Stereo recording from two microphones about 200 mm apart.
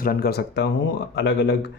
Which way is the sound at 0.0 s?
50° left (ahead or behind).